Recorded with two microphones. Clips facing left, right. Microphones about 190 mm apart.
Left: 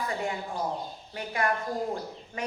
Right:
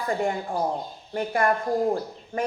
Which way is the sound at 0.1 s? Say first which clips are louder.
Right 6 dB; 50° right (ahead or behind).